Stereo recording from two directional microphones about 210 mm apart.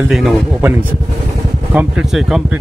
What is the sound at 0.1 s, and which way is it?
Speech, centre (ahead or behind).